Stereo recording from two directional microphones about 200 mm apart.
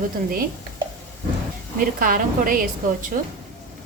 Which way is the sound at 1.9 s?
45° right (ahead or behind).